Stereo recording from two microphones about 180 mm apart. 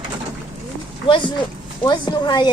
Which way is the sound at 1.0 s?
25° left (ahead or behind).